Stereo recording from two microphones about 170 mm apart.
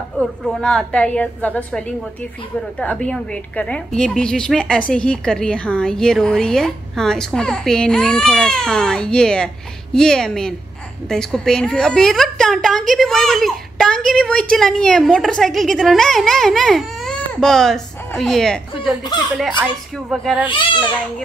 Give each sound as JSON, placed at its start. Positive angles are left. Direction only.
{"t": 0.2, "sound": "a woman's voice", "side_deg": 0}
{"t": 20.4, "sound": "speech", "side_deg": 30}